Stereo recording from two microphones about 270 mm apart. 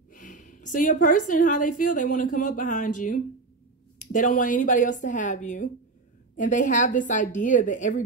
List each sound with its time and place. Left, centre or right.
0.1 s a woman's voice: left